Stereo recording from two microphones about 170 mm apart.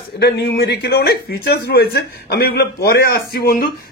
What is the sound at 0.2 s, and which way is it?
A man's voice, 70° left (ahead or behind).